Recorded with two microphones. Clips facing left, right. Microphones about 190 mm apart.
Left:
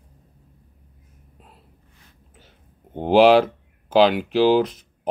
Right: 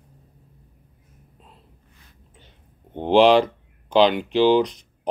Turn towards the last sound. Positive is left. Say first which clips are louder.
# even
turn(degrees=5)  # may be behind; listen again after turning